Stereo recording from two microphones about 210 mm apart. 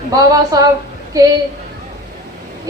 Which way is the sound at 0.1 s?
15° right (ahead or behind).